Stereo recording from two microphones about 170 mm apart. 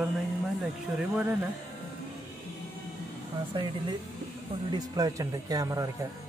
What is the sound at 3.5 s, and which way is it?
Speech, 30° right (ahead or behind).